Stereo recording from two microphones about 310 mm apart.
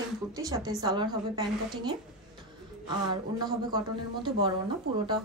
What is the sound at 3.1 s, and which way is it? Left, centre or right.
A woman's voice, centre.